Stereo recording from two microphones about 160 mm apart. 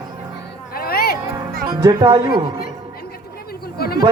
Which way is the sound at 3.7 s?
75° left (ahead or behind).